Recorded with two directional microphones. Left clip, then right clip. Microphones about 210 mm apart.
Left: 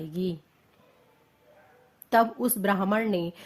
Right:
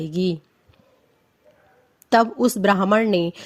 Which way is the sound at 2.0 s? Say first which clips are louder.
Right 6 dB; 35° right (ahead or behind).